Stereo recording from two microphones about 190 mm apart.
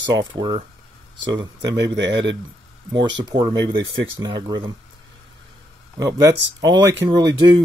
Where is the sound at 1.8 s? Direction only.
65° right (ahead or behind).